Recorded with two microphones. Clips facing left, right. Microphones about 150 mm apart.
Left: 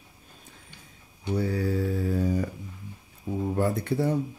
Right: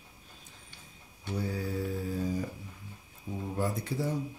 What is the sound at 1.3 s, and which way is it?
Mantra, 70° left (ahead or behind).